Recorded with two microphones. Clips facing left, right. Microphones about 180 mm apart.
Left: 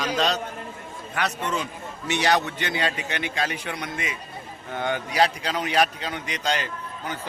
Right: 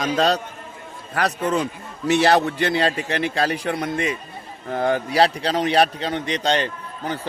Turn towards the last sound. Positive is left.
turn(degrees=-35)  # may be behind; listen again after turning